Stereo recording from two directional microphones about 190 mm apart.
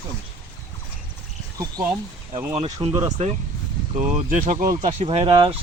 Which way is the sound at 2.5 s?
30° right (ahead or behind).